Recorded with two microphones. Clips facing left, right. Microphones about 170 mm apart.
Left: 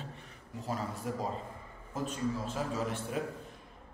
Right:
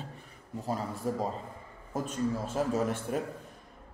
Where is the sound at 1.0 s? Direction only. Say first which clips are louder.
Right 7 dB; 35° right (ahead or behind).